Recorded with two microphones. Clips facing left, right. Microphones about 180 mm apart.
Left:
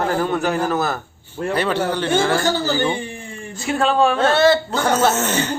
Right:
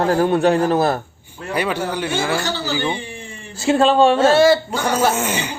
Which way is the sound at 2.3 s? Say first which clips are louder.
Left 3 dB; 50° left (ahead or behind).